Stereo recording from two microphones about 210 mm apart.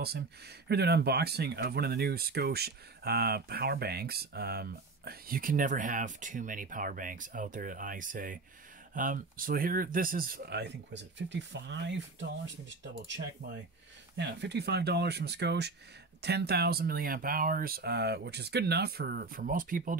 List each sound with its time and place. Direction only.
0.7 s speech: 50° right (ahead or behind)